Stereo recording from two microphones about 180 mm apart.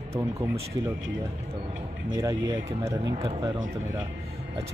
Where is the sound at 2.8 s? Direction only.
15° right (ahead or behind).